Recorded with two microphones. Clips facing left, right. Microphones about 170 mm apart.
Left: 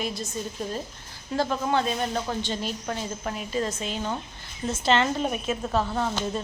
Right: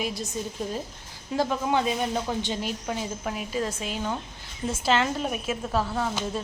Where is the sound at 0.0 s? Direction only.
10° right (ahead or behind).